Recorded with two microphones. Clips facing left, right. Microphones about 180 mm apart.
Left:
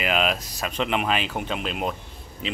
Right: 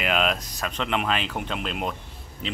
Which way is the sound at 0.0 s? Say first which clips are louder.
Left 1 dB; 5° left (ahead or behind).